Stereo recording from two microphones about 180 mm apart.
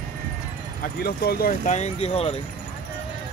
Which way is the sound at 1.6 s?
40° left (ahead or behind).